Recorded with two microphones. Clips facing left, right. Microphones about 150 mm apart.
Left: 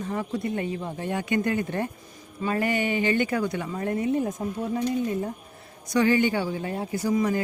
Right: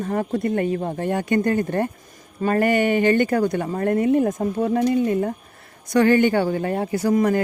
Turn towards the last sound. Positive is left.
turn(degrees=-60)  # may be behind; listen again after turning